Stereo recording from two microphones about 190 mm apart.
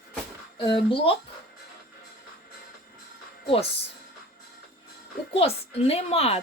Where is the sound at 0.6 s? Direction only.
25° left (ahead or behind).